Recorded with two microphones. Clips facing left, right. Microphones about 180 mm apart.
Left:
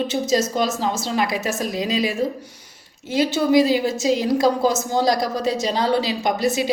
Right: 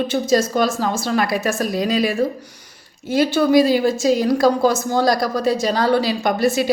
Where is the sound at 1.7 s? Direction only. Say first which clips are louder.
Right 4 dB; 50° right (ahead or behind).